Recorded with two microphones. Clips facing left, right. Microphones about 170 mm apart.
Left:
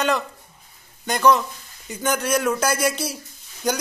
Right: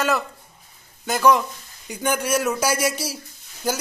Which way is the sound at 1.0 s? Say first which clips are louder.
Even; 5° right (ahead or behind).